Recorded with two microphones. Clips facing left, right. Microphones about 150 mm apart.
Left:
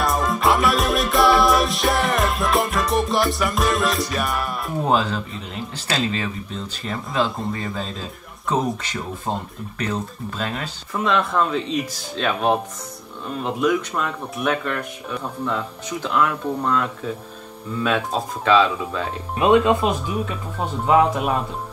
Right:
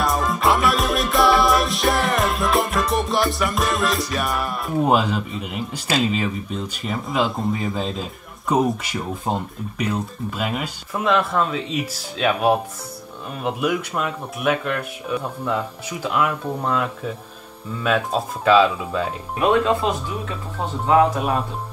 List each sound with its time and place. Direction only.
0.0 s music: centre (ahead or behind)
4.8 s speech: 10° right (ahead or behind)
19.4 s speech: 15° left (ahead or behind)